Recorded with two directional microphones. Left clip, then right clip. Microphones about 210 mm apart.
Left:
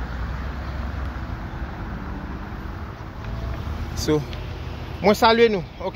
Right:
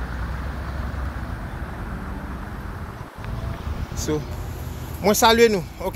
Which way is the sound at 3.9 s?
45° left (ahead or behind).